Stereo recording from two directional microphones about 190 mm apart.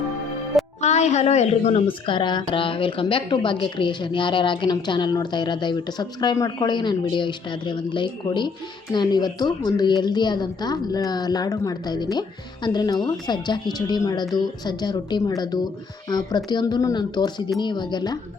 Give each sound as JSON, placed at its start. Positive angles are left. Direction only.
{"t": 0.8, "sound": "a woman's voice", "side_deg": 35}